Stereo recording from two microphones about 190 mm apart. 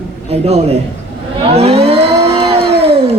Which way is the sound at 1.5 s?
30° right (ahead or behind).